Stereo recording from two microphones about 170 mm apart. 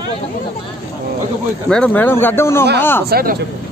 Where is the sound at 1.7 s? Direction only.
5° left (ahead or behind).